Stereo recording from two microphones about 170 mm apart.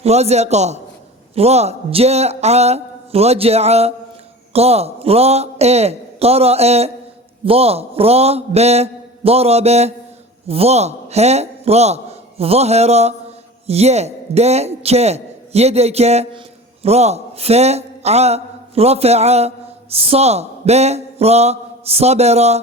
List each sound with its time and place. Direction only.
0.0 s a man's voice: 40° right (ahead or behind)